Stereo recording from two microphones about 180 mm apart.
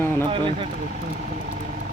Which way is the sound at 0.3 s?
30° right (ahead or behind).